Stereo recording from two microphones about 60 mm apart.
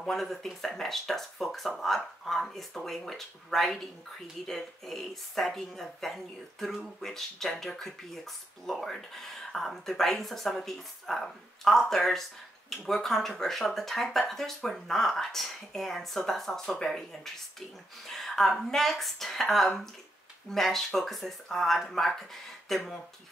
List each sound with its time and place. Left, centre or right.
0.0 s speech: centre